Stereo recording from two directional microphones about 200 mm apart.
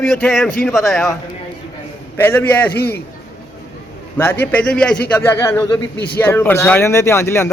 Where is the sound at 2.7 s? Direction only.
50° left (ahead or behind).